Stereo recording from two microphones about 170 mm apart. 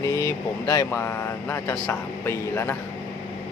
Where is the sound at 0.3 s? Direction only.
15° left (ahead or behind).